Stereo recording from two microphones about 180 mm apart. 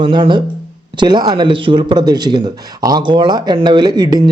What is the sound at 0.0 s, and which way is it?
Speech, 25° right (ahead or behind).